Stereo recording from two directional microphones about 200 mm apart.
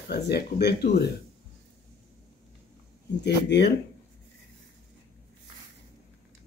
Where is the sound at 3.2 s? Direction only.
60° left (ahead or behind).